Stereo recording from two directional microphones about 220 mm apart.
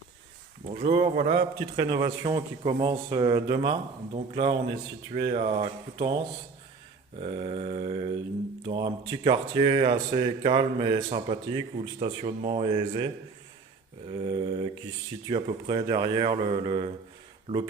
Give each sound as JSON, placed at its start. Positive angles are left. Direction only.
{"t": 0.7, "sound": "speech", "side_deg": -25}
{"t": 7.2, "sound": "speech", "side_deg": -25}
{"t": 14.1, "sound": "speech", "side_deg": -25}